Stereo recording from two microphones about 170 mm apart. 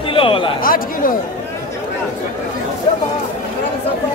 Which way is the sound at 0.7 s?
55° left (ahead or behind).